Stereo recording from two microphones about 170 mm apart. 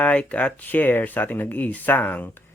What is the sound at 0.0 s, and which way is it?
Speech, 5° left (ahead or behind).